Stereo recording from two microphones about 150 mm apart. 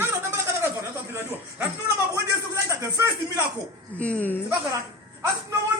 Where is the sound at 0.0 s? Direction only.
15° right (ahead or behind).